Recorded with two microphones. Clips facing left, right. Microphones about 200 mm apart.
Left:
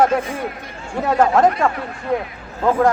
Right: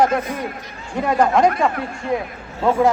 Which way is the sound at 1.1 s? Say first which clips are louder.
Left 1 dB; 5° left (ahead or behind).